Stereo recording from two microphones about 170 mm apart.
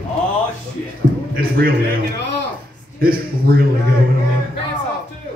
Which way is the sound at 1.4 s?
60° right (ahead or behind).